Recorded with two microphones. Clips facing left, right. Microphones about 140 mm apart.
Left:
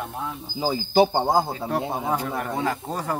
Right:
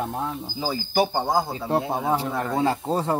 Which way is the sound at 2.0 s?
25° right (ahead or behind).